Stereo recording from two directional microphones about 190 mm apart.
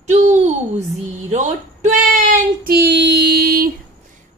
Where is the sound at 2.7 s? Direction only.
65° right (ahead or behind).